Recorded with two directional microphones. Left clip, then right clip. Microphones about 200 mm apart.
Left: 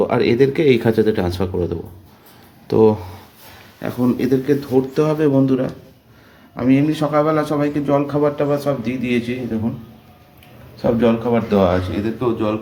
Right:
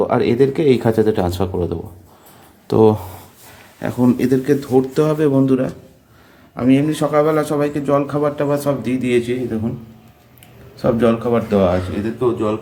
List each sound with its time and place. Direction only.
0.0 s speech: 5° right (ahead or behind)
10.8 s speech: 20° right (ahead or behind)
11.4 s speech: centre (ahead or behind)